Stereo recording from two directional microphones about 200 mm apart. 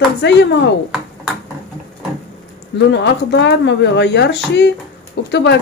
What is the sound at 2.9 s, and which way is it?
Speech, 60° left (ahead or behind).